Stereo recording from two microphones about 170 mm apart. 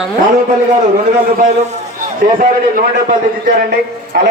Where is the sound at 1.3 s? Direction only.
45° right (ahead or behind).